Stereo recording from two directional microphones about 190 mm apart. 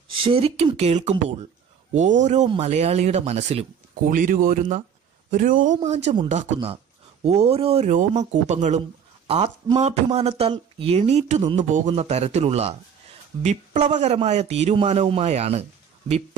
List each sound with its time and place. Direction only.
0.2 s speech: 30° right (ahead or behind)